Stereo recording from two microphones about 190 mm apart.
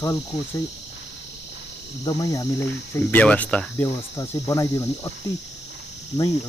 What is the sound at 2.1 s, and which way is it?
Speech, 20° left (ahead or behind).